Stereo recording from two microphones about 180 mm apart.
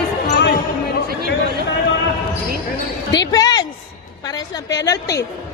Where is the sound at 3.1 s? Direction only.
20° left (ahead or behind).